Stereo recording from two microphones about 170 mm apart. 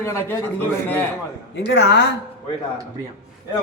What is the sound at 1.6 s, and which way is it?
Speech, 90° left.